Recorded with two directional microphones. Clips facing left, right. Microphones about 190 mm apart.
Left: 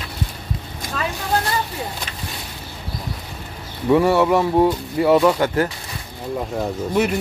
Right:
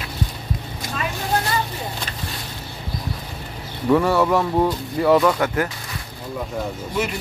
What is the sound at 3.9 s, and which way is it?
A man's voice, 25° left (ahead or behind).